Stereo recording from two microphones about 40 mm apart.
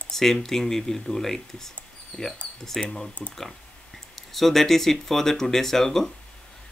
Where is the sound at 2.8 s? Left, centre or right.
Centre.